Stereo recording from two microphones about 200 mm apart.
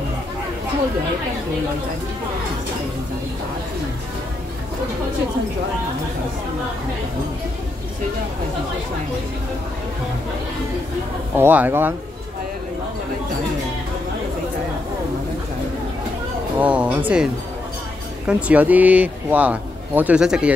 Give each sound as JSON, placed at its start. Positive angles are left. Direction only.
{"t": 11.3, "sound": "a man's voice", "side_deg": -10}
{"t": 16.5, "sound": "a man's voice", "side_deg": -5}